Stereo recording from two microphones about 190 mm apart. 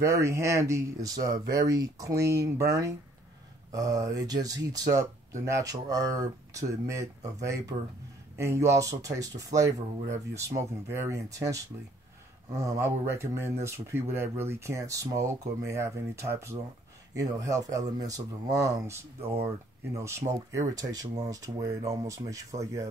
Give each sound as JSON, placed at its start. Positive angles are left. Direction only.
{"t": 0.0, "sound": "speech", "side_deg": -15}